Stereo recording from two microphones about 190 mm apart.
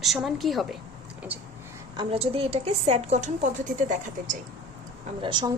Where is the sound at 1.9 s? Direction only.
30° right (ahead or behind).